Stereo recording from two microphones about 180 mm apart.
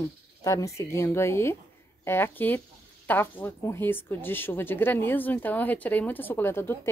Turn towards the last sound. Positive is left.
turn(degrees=15)  # may be behind; listen again after turning